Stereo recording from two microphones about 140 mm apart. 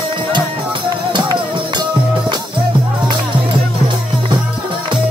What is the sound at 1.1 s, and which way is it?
Music, 30° right (ahead or behind).